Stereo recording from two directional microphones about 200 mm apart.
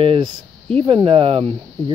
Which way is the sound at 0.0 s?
25° right (ahead or behind).